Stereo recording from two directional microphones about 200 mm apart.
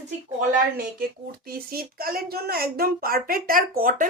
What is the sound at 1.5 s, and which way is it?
Speech, 50° right (ahead or behind).